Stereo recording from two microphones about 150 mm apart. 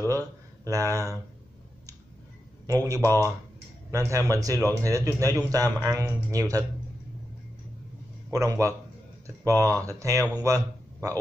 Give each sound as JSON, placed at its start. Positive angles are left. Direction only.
{"t": 0.7, "sound": "a man's voice", "side_deg": -20}
{"t": 2.6, "sound": "a man's voice", "side_deg": -25}
{"t": 8.3, "sound": "a man's voice", "side_deg": -20}